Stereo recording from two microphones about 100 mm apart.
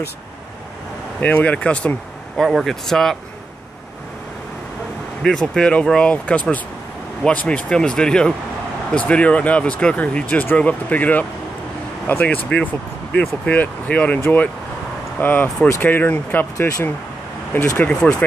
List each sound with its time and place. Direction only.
1.2 s speech: 15° left (ahead or behind)
2.4 s speech: centre (ahead or behind)
5.2 s speech: 5° left (ahead or behind)
13.5 s speech: 10° left (ahead or behind)
17.7 s speech: 10° left (ahead or behind)